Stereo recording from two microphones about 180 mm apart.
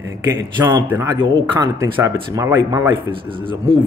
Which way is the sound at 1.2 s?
25° right (ahead or behind).